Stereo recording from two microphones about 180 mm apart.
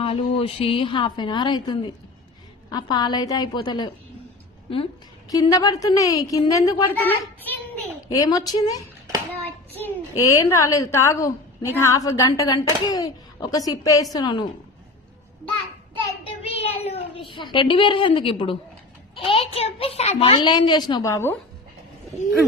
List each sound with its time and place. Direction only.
0.0 s a woman's voice: 30° left (ahead or behind)
5.3 s a woman's voice: 20° left (ahead or behind)
9.4 s a child's voice: 10° left (ahead or behind)
16.4 s a sound: 35° left (ahead or behind)
19.1 s a woman's voice: 30° left (ahead or behind); by 21.3 s 15° left (ahead or behind)